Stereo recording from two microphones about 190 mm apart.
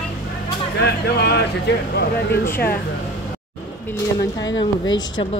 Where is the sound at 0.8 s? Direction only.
60° left (ahead or behind).